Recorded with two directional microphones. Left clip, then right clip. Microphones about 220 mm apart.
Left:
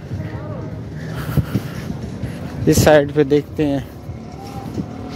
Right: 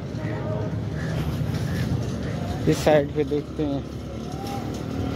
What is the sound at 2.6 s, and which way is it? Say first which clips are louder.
Speech: left 7 dB; 20° left (ahead or behind).